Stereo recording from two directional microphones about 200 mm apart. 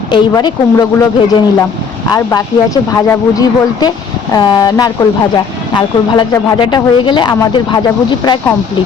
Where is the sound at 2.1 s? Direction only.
20° left (ahead or behind).